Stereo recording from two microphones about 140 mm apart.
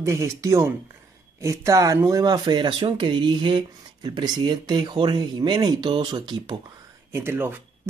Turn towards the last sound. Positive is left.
turn(degrees=-15)  # may be behind; listen again after turning